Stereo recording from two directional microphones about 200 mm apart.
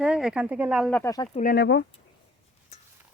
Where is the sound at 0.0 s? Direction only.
5° right (ahead or behind).